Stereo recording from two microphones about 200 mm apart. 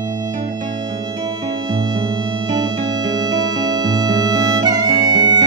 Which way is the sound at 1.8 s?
20° right (ahead or behind).